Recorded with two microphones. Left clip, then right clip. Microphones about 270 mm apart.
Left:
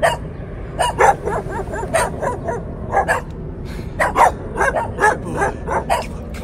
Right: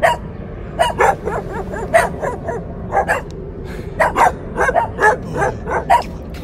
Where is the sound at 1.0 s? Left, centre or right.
Centre.